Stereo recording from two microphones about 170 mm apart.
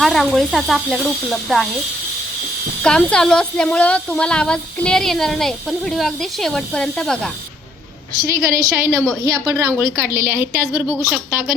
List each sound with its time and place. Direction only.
0.0 s a woman's voice: centre (ahead or behind)
2.8 s a woman's voice: 5° left (ahead or behind)
8.2 s a woman's voice: 20° right (ahead or behind)